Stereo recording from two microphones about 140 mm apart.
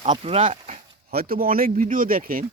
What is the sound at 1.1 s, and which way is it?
Speech, 90° right.